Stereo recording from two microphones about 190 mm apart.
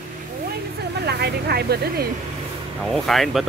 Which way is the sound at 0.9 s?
60° right (ahead or behind).